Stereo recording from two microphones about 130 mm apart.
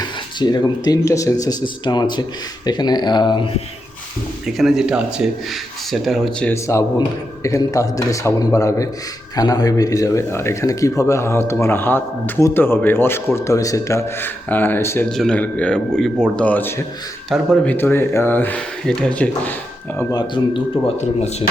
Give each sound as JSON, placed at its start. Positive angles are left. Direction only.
{"t": 0.0, "sound": "speech", "side_deg": 35}
{"t": 4.4, "sound": "a man's voice", "side_deg": 0}
{"t": 6.5, "sound": "speech", "side_deg": 20}
{"t": 15.1, "sound": "a man's voice", "side_deg": 5}
{"t": 17.2, "sound": "speech", "side_deg": 0}
{"t": 20.0, "sound": "speech", "side_deg": 25}
{"t": 20.3, "sound": "speech", "side_deg": 40}